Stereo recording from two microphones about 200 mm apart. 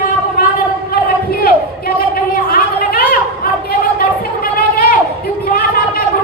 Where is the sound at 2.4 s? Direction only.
50° left (ahead or behind).